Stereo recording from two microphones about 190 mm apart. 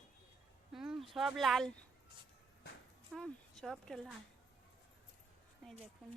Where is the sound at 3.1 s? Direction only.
Centre (ahead or behind).